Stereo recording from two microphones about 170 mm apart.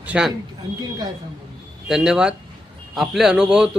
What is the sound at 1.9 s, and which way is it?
A man's voice, 5° right (ahead or behind).